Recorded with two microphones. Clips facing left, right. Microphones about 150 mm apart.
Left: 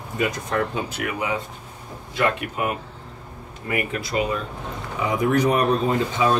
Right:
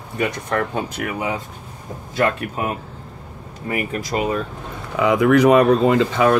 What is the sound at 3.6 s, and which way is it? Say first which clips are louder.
Speech: right 2 dB; 45° right (ahead or behind).